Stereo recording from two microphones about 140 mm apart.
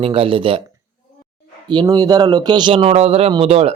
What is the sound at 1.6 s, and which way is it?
Speech, 30° right (ahead or behind).